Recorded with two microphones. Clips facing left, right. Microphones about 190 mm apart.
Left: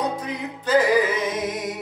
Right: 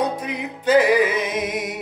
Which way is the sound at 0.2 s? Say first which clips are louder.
Right 2 dB; 20° right (ahead or behind).